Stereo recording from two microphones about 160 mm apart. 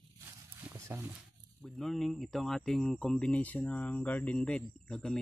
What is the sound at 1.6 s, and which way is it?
Speech, centre (ahead or behind).